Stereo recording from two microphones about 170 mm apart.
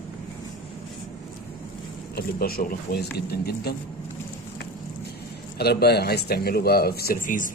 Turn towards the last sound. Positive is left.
turn(degrees=50)  # may be behind; listen again after turning